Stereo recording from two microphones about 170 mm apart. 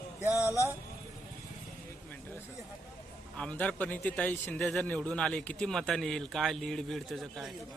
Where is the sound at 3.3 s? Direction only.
5° left (ahead or behind).